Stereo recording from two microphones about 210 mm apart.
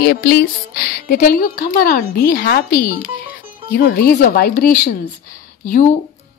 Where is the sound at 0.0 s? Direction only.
50° left (ahead or behind).